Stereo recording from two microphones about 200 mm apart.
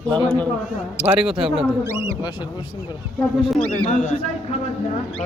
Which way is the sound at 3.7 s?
35° left (ahead or behind).